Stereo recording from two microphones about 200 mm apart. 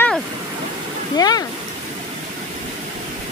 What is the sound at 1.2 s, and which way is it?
Speech, 20° left (ahead or behind).